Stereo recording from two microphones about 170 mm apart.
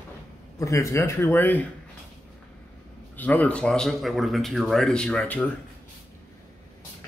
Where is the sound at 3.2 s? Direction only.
10° left (ahead or behind).